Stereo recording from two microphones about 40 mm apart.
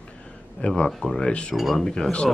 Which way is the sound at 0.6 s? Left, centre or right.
Left.